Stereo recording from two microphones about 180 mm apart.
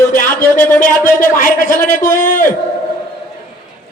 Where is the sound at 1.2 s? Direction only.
50° left (ahead or behind).